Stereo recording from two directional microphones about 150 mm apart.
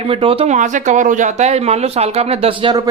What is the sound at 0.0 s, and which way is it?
Speech, 40° right (ahead or behind).